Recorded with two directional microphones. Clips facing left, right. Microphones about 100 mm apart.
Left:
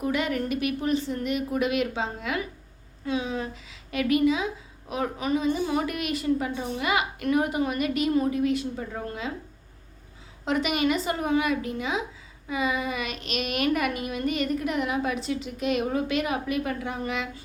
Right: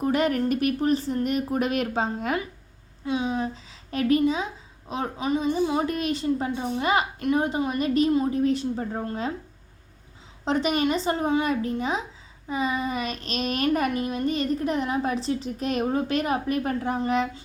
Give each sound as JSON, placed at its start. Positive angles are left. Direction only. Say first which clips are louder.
{"t": 0.0, "sound": "a child's voice", "louder": "right 4 dB", "side_deg": -40}
{"t": 3.1, "sound": "a woman's voice", "louder": "right 3 dB", "side_deg": -25}
{"t": 10.4, "sound": "a child's voice", "louder": "right 1 dB", "side_deg": -35}